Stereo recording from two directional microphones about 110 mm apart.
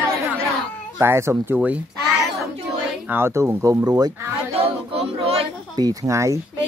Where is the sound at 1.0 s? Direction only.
25° right (ahead or behind).